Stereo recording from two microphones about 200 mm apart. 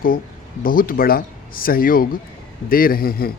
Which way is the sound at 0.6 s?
45° left (ahead or behind).